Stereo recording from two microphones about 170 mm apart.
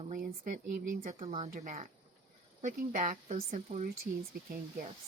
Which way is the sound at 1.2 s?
35° right (ahead or behind).